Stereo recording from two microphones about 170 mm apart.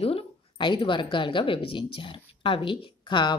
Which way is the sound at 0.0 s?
30° left (ahead or behind).